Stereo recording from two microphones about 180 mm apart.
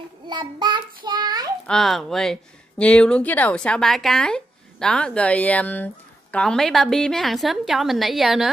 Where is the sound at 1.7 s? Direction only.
Centre (ahead or behind).